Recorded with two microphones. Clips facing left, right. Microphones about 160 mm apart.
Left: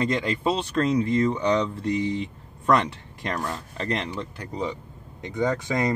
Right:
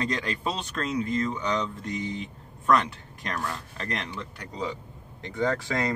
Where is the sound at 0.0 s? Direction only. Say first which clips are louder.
Left 5 dB; 20° left (ahead or behind).